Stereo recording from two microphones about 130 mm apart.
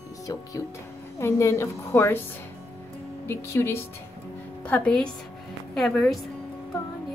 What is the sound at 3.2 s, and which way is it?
A woman's voice, 20° left (ahead or behind).